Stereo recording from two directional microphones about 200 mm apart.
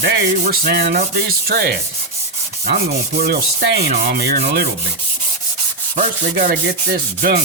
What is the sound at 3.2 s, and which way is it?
Sanding, 55° right (ahead or behind).